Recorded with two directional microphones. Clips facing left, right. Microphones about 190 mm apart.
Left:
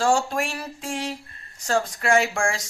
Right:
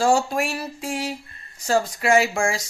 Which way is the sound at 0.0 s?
5° right (ahead or behind).